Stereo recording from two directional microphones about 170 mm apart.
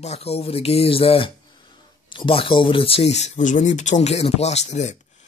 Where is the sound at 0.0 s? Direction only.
40° left (ahead or behind).